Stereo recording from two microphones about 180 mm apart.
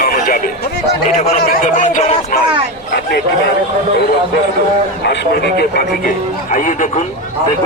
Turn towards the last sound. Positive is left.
turn(degrees=45)  # may be behind; listen again after turning